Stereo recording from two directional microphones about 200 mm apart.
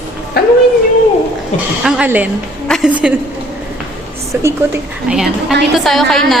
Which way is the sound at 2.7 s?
5° right (ahead or behind).